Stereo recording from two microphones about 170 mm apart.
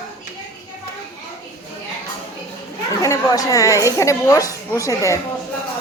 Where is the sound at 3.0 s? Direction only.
20° left (ahead or behind).